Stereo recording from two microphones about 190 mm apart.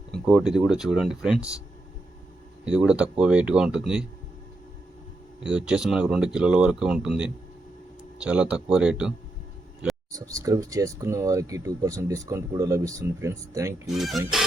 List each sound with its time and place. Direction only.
0.1 s speech: centre (ahead or behind)
2.6 s speech: 5° right (ahead or behind)
5.5 s speech: 5° right (ahead or behind)
8.2 s speech: 5° right (ahead or behind)
10.1 s speech: 20° right (ahead or behind)
13.8 s speech: centre (ahead or behind)